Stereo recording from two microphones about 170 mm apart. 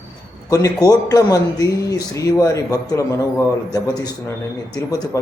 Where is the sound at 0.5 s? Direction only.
20° left (ahead or behind).